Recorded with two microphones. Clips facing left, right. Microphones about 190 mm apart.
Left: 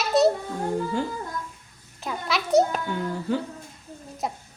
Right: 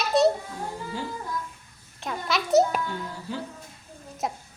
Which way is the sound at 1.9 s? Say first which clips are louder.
Even; centre (ahead or behind).